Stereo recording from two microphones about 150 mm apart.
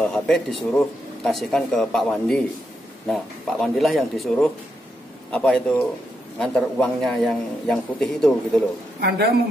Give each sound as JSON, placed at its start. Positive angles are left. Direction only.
{"t": 0.0, "sound": "a man's voice", "side_deg": 0}